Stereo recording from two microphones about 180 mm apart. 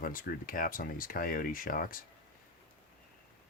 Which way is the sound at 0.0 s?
50° left (ahead or behind).